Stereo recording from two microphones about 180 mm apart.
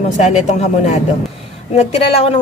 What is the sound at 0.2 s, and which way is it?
A woman's voice, 40° left (ahead or behind).